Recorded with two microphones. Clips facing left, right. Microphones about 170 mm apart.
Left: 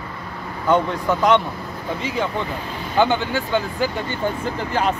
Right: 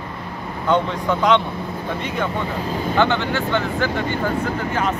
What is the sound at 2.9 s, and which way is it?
Speech, 15° left (ahead or behind).